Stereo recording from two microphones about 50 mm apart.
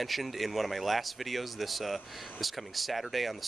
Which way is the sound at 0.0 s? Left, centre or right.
Centre.